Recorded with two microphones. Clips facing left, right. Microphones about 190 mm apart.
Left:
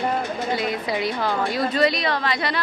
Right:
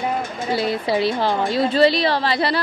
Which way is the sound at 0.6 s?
30° right (ahead or behind).